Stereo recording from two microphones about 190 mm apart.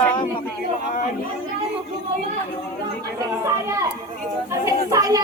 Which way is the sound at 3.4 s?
15° right (ahead or behind).